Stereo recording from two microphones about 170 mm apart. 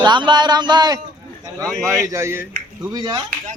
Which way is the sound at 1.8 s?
20° right (ahead or behind).